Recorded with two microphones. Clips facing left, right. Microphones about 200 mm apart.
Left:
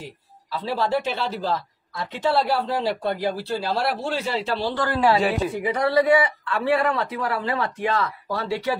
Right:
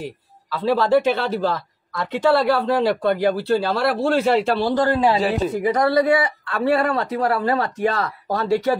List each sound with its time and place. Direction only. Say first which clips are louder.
0.7 s a woman's voice: right 7 dB; 65° right (ahead or behind); by 4.9 s 45° right (ahead or behind)
4.9 s a woman's voice: right 1 dB; 20° right (ahead or behind)
5.5 s speech: right 4 dB; 40° right (ahead or behind)